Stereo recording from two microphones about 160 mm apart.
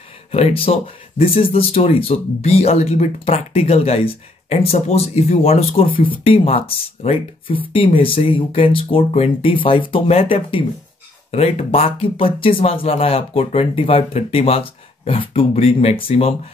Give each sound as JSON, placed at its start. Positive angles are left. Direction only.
{"t": 0.3, "sound": "speech", "side_deg": 35}